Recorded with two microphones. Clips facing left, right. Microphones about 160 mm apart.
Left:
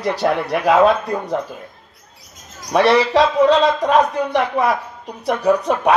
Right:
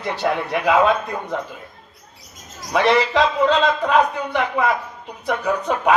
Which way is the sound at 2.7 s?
35° left (ahead or behind).